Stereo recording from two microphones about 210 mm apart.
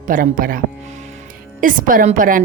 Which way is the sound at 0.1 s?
40° right (ahead or behind).